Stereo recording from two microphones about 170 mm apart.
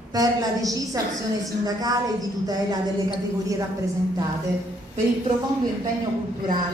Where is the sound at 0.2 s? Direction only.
20° right (ahead or behind).